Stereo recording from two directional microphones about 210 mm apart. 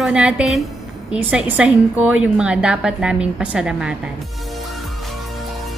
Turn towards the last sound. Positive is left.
turn(degrees=-5)  # may be behind; listen again after turning